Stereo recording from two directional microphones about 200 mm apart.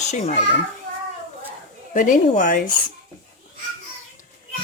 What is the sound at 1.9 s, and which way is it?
Speech, 40° left (ahead or behind).